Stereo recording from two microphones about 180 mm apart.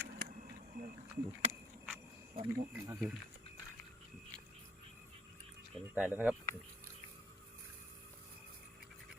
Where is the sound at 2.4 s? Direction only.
10° right (ahead or behind).